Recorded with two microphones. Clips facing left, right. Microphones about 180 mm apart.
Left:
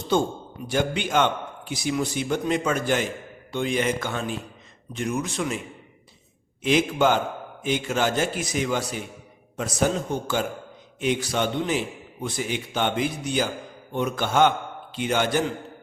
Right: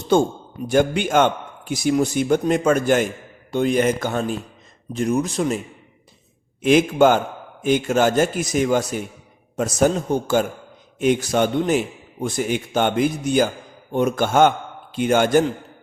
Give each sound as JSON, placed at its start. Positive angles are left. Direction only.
{"t": 0.7, "sound": "a man's voice", "side_deg": -50}
{"t": 6.6, "sound": "a man's voice", "side_deg": -50}